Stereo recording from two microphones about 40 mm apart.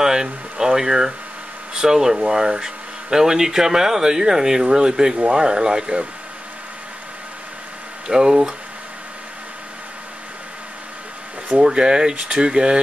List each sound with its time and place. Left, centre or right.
0.0 s speech: centre
8.1 s speech: centre
11.4 s speech: right